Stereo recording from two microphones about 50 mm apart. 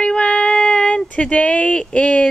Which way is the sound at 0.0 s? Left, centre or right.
Centre.